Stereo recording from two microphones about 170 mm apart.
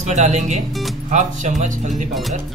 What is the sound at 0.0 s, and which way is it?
Music, 45° right (ahead or behind).